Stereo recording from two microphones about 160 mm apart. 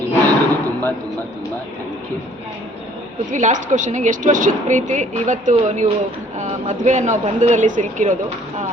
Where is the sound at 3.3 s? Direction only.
50° right (ahead or behind).